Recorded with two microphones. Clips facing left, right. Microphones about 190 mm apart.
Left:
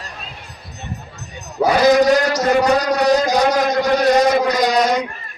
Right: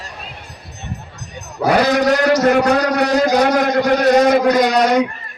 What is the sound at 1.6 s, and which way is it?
A man's voice, 60° right (ahead or behind).